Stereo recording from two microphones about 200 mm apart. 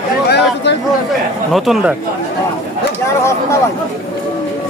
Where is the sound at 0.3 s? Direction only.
60° left (ahead or behind).